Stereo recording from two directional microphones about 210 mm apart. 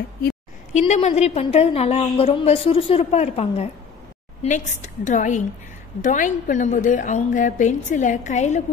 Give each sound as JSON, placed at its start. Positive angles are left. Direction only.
{"t": 0.7, "sound": "a woman's voice", "side_deg": 30}